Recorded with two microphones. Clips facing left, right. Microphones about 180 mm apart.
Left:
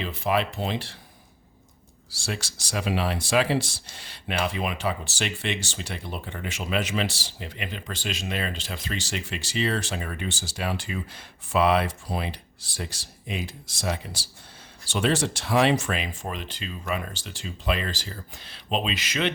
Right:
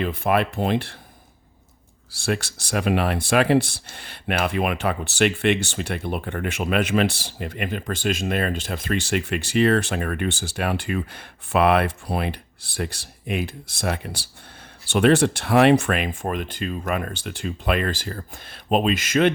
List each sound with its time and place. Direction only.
0.0 s speech: 55° right (ahead or behind)
2.1 s speech: 60° right (ahead or behind)